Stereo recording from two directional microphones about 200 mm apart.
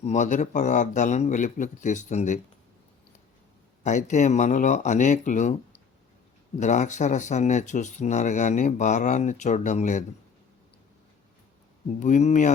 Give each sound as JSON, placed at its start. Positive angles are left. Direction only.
{"t": 0.0, "sound": "speech", "side_deg": 35}
{"t": 3.8, "sound": "speech", "side_deg": 35}
{"t": 6.6, "sound": "speech", "side_deg": 35}
{"t": 11.9, "sound": "speech", "side_deg": 40}